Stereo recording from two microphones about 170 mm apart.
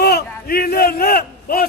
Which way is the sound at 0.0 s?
70° left (ahead or behind).